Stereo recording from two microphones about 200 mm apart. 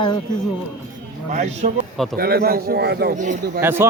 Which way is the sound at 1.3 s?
35° right (ahead or behind).